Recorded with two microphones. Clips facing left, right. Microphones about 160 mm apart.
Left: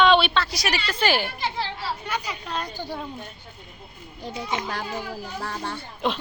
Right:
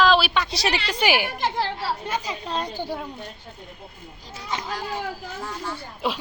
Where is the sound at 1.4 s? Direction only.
45° right (ahead or behind).